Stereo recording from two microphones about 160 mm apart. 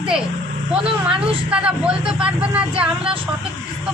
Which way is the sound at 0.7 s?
35° right (ahead or behind).